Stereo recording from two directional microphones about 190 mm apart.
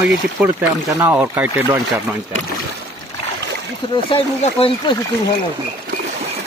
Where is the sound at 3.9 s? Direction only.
30° left (ahead or behind).